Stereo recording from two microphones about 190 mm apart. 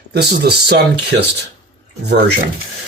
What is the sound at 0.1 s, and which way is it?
Speech, 55° right (ahead or behind).